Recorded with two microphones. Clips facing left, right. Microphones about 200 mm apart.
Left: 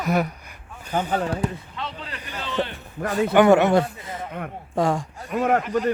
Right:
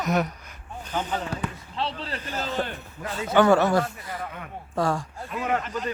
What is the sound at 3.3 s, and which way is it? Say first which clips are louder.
Speech: left 3 dB; 20° left (ahead or behind).